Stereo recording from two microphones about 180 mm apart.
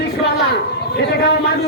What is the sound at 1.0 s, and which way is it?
Speech, 65° left (ahead or behind).